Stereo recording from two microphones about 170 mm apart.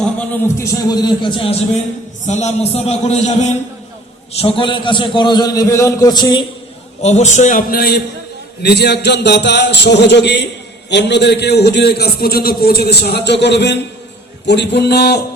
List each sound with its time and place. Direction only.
0.6 s a man's voice: 20° left (ahead or behind)
2.2 s a man's voice: 45° left (ahead or behind)
4.4 s a man's voice: 30° left (ahead or behind)
7.0 s a man's voice: 40° left (ahead or behind); by 15.4 s 75° left (ahead or behind)